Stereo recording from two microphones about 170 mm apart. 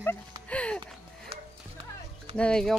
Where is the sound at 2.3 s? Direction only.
5° left (ahead or behind).